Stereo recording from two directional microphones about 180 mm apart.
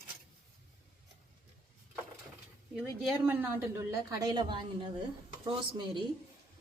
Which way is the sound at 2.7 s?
5° right (ahead or behind).